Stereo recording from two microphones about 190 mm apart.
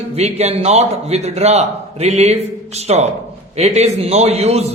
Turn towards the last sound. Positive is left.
turn(degrees=-35)  # may be behind; listen again after turning